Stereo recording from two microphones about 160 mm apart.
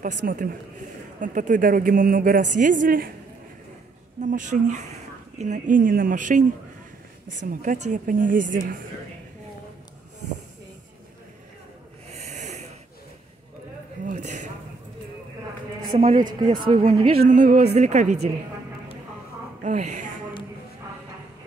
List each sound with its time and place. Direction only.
0.0 s a woman's voice: 55° right (ahead or behind)
4.2 s a woman's voice: 50° right (ahead or behind)
12.1 s snort: 45° right (ahead or behind)
14.0 s a sound: 50° right (ahead or behind)
15.9 s a woman's voice: 45° right (ahead or behind)
16.3 s speech: 25° right (ahead or behind)
17.3 s a woman's voice: 50° right (ahead or behind)
19.6 s a woman's voice: 50° right (ahead or behind)